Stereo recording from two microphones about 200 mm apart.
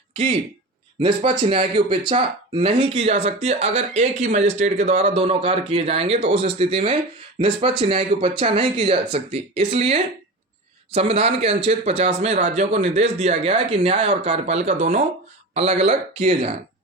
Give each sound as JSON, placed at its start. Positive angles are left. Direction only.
{"t": 1.0, "sound": "speech", "side_deg": -25}